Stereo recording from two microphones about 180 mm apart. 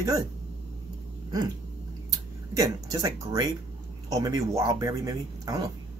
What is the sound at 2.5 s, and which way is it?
Speech, 20° right (ahead or behind).